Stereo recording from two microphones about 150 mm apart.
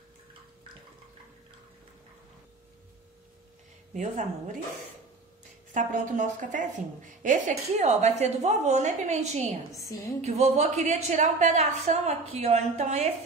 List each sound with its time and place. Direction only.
3.9 s a woman's voice: 55° right (ahead or behind)
5.7 s a woman's voice: 55° right (ahead or behind)
9.7 s a woman's voice: 20° left (ahead or behind)
10.2 s a woman's voice: 45° right (ahead or behind)